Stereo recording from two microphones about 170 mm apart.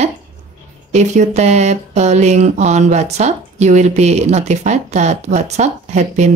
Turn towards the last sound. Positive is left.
turn(degrees=-45)  # may be behind; listen again after turning